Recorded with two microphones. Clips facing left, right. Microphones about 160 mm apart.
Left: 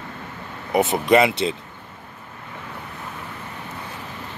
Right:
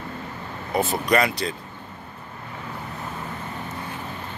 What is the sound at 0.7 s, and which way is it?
Speech, 20° left (ahead or behind).